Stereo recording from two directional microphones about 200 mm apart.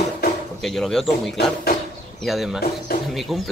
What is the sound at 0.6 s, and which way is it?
Speech, centre (ahead or behind).